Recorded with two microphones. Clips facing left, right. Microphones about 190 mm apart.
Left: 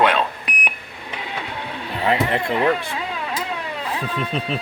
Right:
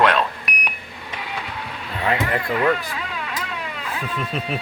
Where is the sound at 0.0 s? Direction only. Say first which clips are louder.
Even; 25° left (ahead or behind).